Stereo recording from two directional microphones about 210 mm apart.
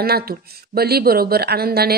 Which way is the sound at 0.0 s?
45° right (ahead or behind).